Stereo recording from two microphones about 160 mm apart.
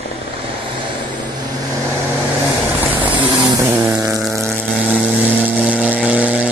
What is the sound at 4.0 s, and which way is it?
Vehicle, 20° right (ahead or behind).